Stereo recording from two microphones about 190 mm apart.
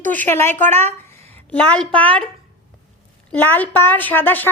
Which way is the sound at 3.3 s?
10° left (ahead or behind).